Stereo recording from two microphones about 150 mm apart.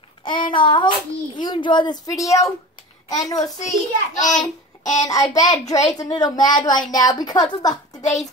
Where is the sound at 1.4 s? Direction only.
30° left (ahead or behind).